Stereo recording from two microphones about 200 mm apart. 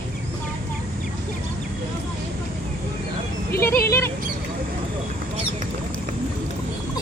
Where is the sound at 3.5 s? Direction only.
10° left (ahead or behind).